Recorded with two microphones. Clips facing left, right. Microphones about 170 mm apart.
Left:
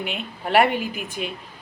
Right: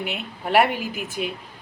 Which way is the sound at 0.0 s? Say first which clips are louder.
Even; 5° right (ahead or behind).